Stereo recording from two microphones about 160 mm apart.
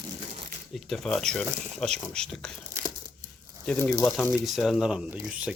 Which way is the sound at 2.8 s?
15° right (ahead or behind).